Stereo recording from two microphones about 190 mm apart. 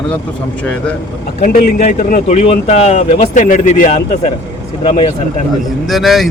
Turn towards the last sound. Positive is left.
turn(degrees=0)  # may be behind; listen again after turning